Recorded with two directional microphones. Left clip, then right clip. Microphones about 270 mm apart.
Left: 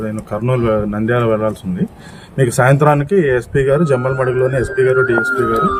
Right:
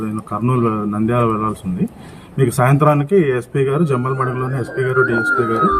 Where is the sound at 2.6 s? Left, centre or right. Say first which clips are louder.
Left 3 dB; left.